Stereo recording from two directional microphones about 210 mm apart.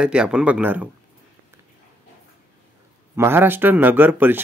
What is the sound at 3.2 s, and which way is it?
Speech, 10° right (ahead or behind).